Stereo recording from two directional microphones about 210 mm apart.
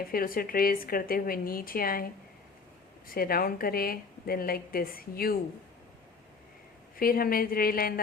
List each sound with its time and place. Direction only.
0.1 s a woman's voice: 45° left (ahead or behind)
3.1 s a woman's voice: 45° left (ahead or behind)
6.9 s a woman's voice: 45° left (ahead or behind)